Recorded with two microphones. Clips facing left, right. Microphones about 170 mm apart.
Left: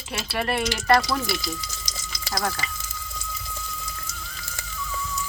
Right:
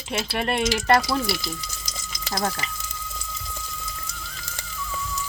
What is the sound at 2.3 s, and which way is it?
Speech, 25° right (ahead or behind).